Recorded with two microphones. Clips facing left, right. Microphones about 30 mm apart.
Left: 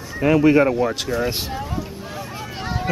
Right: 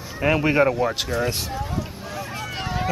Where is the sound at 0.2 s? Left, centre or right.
Centre.